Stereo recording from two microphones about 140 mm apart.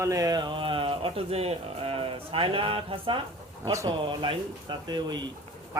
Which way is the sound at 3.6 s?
20° right (ahead or behind).